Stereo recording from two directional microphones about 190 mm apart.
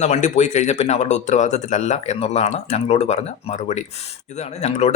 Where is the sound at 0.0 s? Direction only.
40° left (ahead or behind).